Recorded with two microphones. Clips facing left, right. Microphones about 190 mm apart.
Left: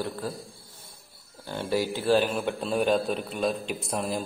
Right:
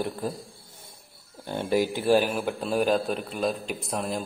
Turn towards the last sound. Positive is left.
turn(degrees=0)  # may be behind; listen again after turning